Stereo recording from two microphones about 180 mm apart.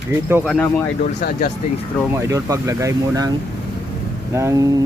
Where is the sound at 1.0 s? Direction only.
60° left (ahead or behind).